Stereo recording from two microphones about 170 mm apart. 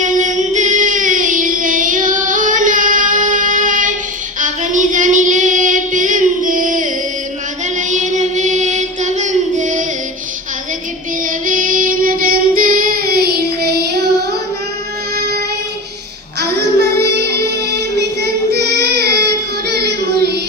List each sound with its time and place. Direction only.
0.0 s music: 45° right (ahead or behind)
4.4 s child singing: 50° right (ahead or behind)
7.8 s music: 45° right (ahead or behind)
11.2 s child singing: 50° right (ahead or behind)
15.1 s music: 65° right (ahead or behind)
16.4 s music: 70° right (ahead or behind)
18.2 s child singing: 75° right (ahead or behind)